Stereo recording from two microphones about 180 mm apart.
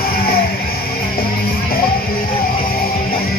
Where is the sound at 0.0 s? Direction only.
55° left (ahead or behind).